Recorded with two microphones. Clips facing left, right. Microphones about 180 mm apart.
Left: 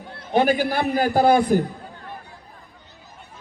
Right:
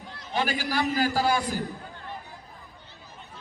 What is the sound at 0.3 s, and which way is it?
A man's voice, 55° left (ahead or behind).